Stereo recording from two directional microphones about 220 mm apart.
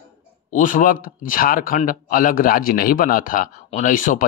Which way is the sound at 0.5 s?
35° left (ahead or behind).